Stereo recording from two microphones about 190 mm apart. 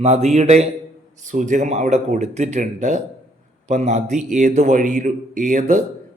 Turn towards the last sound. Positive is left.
turn(degrees=-40)  # may be behind; listen again after turning